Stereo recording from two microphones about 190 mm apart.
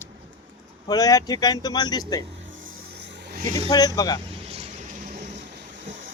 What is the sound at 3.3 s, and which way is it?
Vehicle, 45° right (ahead or behind).